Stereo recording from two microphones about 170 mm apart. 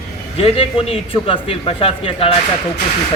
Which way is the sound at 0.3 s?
35° left (ahead or behind).